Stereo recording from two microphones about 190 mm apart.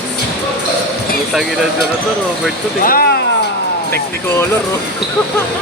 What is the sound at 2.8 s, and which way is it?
Speech, 50° left (ahead or behind).